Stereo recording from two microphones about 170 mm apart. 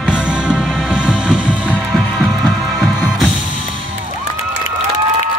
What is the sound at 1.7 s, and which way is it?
Music, 5° left (ahead or behind).